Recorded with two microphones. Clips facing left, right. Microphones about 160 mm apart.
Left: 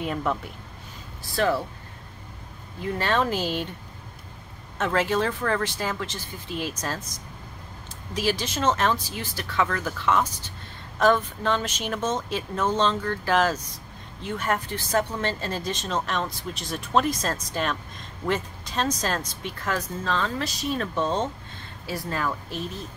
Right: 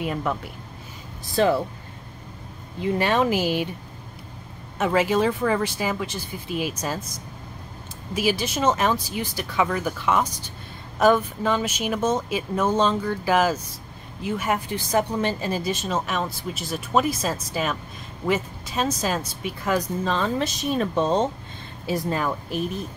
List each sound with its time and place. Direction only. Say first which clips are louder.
0.0 s speech: right 1 dB; 5° right (ahead or behind)
1.3 s speech: right 4 dB; 20° right (ahead or behind)
2.8 s speech: right 4 dB; 15° right (ahead or behind)
4.7 s speech: right 3 dB; 10° right (ahead or behind)
8.1 s speech: right 3 dB; 10° right (ahead or behind)